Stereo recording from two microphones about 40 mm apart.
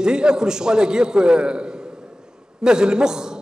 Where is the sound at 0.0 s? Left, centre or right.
Centre.